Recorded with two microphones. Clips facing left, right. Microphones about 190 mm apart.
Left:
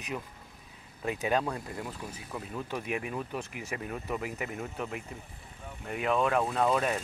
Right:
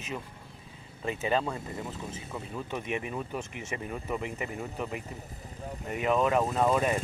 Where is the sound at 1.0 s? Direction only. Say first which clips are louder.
Even; 5° left (ahead or behind).